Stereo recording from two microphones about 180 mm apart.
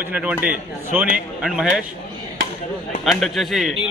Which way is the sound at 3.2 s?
Centre (ahead or behind).